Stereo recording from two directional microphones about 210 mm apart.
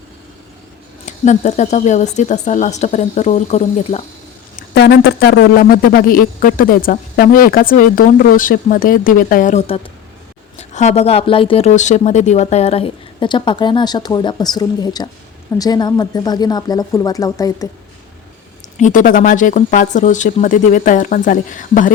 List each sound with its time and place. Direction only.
1.0 s speech: 35° left (ahead or behind)
4.5 s a man's voice: 50° left (ahead or behind); by 17.7 s 15° left (ahead or behind)
18.8 s speech: 40° left (ahead or behind)